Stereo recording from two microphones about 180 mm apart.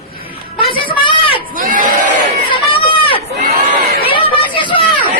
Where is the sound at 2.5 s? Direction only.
30° left (ahead or behind).